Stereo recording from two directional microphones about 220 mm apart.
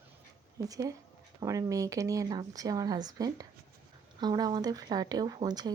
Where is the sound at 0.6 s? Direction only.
15° right (ahead or behind).